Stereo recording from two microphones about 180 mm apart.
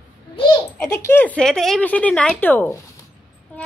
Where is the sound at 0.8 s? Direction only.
15° left (ahead or behind).